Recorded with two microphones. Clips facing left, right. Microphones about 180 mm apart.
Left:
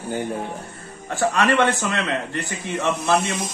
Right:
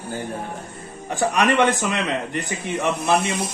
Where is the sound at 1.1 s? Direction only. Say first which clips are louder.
Even; 15° right (ahead or behind).